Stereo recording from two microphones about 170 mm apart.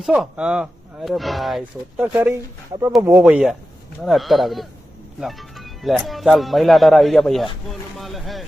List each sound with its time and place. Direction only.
0.0 s speech: 5° right (ahead or behind)
2.1 s speech: 15° right (ahead or behind); by 8.4 s centre (ahead or behind)